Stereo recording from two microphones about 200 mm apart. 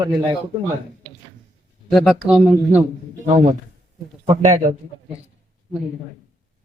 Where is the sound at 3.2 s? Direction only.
30° right (ahead or behind).